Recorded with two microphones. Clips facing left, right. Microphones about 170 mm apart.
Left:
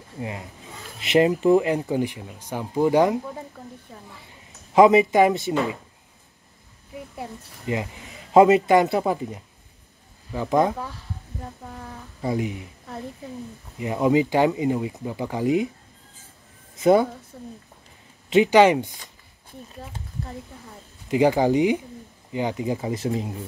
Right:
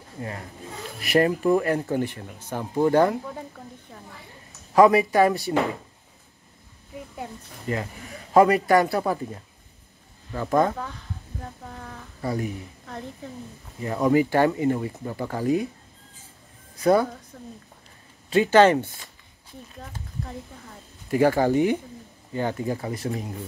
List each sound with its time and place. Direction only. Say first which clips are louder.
0.2 s speech: left 1 dB; 15° left (ahead or behind)
4.7 s a man's voice: left 2 dB; 20° left (ahead or behind)
7.6 s a man's voice: left 2 dB; 15° left (ahead or behind)
12.2 s a woman's voice: left 2 dB; 15° left (ahead or behind)
16.7 s a woman's voice: left 2 dB; 20° left (ahead or behind)
17.3 s speech: left 2 dB; 10° left (ahead or behind)
21.1 s speech: left 1 dB; 15° left (ahead or behind)